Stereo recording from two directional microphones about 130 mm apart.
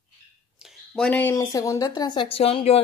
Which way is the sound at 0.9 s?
10° left (ahead or behind).